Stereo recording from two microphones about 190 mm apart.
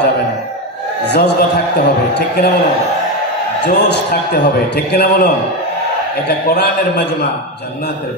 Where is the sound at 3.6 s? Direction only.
65° left (ahead or behind).